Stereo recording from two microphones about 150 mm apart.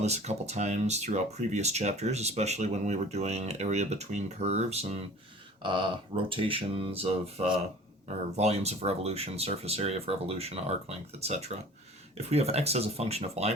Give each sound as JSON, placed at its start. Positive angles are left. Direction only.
{"t": 0.0, "sound": "speech", "side_deg": -45}
{"t": 5.6, "sound": "speech", "side_deg": -35}